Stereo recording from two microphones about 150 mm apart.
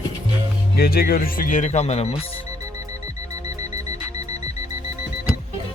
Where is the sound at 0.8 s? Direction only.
90° left; by 2.2 s 45° left (ahead or behind).